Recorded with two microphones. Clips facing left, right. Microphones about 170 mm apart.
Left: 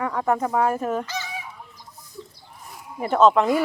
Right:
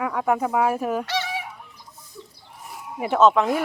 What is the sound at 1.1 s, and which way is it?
Goose, 85° right.